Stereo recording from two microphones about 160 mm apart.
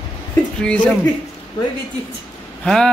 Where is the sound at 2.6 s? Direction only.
5° left (ahead or behind).